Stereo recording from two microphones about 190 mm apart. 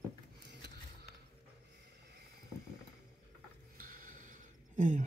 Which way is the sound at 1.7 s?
60° right (ahead or behind).